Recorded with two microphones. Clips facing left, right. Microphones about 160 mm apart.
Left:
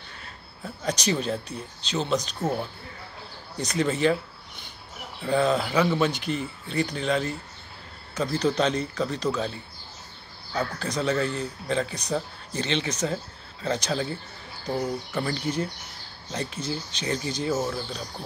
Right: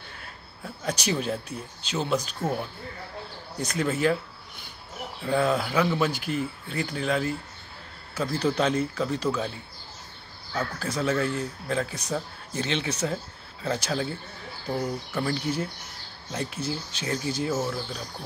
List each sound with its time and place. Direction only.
0.8 s speech: 5° right (ahead or behind)
3.5 s speech: 5° right (ahead or behind)
5.2 s speech: 5° right (ahead or behind)
10.8 s speech: 5° right (ahead or behind)